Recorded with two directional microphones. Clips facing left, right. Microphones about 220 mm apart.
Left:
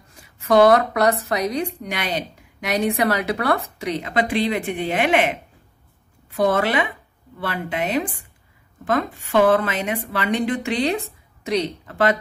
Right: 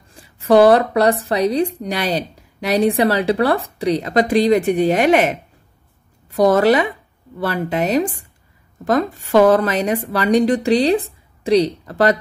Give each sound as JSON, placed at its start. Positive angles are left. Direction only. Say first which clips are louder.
{"t": 0.1, "sound": "speech", "louder": "right 4 dB", "side_deg": -30}